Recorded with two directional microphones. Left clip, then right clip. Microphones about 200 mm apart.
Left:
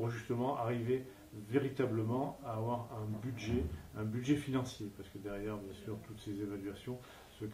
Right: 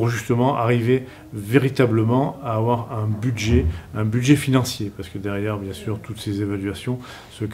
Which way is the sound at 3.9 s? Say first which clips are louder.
Right 17 dB; 30° right (ahead or behind).